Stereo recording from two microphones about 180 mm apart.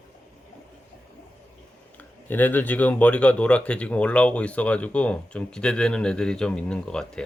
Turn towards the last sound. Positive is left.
turn(degrees=5)  # may be behind; listen again after turning